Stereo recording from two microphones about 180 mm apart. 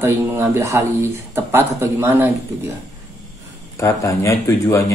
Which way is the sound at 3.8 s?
15° left (ahead or behind).